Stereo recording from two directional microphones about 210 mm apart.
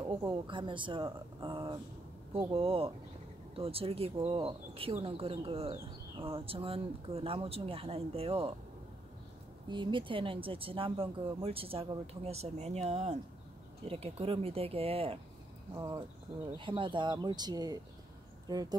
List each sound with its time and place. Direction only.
0.0 s speech: 20° right (ahead or behind)
9.7 s speech: 20° right (ahead or behind)